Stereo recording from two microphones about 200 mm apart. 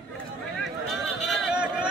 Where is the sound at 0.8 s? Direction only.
Centre (ahead or behind).